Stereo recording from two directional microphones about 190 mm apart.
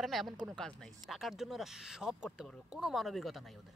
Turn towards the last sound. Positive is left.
turn(degrees=0)  # may be behind; listen again after turning